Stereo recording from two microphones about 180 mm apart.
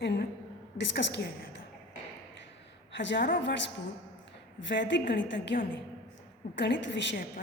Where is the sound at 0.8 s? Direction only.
75° left (ahead or behind).